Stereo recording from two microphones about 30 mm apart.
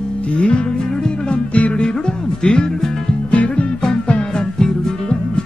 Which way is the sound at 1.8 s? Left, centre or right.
Left.